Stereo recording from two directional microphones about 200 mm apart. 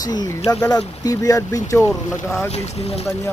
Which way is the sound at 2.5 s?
30° left (ahead or behind).